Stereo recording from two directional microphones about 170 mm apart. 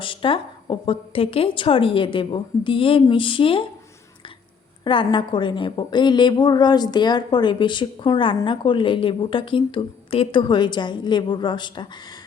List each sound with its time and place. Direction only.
0.0 s a woman's voice: 30° left (ahead or behind)
4.8 s a woman's voice: 30° left (ahead or behind)